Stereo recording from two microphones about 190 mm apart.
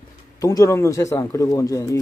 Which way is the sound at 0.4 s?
15° left (ahead or behind).